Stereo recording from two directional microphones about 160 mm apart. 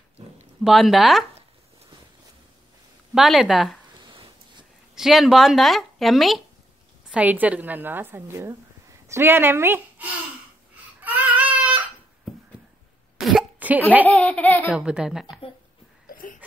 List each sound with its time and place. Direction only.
0.7 s speech: centre (ahead or behind)
3.2 s speech: centre (ahead or behind)
4.1 s a sound: 30° right (ahead or behind)
4.9 s a woman's voice: 5° right (ahead or behind)
11.0 s baby cry: 10° right (ahead or behind)
13.2 s cough: 5° right (ahead or behind)
14.0 s laughter: 5° left (ahead or behind)
14.7 s speech: 5° right (ahead or behind)
16.1 s a sound: 60° left (ahead or behind)